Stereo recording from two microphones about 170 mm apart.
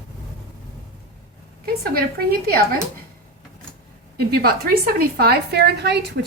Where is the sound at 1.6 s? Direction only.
60° right (ahead or behind).